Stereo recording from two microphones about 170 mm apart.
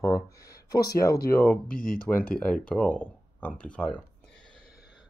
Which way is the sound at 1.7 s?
55° left (ahead or behind).